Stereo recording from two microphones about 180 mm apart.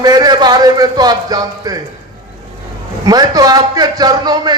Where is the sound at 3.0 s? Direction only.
20° right (ahead or behind).